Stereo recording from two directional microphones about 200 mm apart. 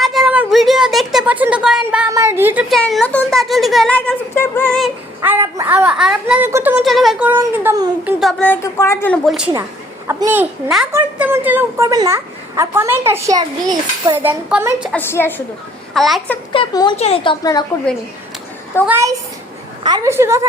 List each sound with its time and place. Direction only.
0.0 s a sound: centre (ahead or behind)
2.1 s a woman's voice: 10° right (ahead or behind)
2.6 s speech: centre (ahead or behind)
5.2 s a woman's voice: 10° right (ahead or behind)
8.0 s a woman's voice: centre (ahead or behind)
10.1 s a woman's voice: 10° right (ahead or behind)
14.9 s a woman's voice: 10° left (ahead or behind)
16.5 s speech: 25° left (ahead or behind)
17.4 s a woman's voice: 15° left (ahead or behind)
18.9 s a woman's voice: 15° right (ahead or behind)